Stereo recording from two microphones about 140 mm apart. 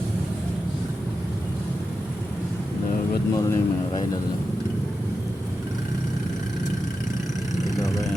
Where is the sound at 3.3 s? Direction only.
25° left (ahead or behind).